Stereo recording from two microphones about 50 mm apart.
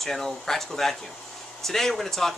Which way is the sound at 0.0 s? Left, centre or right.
Centre.